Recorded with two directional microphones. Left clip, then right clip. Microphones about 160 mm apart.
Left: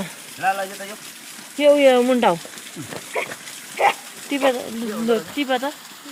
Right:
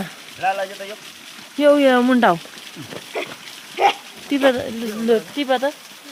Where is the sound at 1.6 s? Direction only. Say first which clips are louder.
Even; 45° right (ahead or behind).